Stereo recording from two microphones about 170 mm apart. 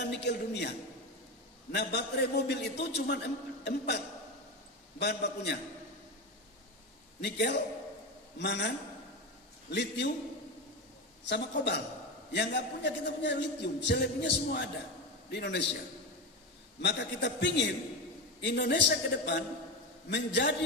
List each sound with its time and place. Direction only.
0.1 s a man's voice: 90° left
7.2 s a man's voice: 90° left
11.2 s a man's voice: 90° left
16.8 s a man's voice: 90° left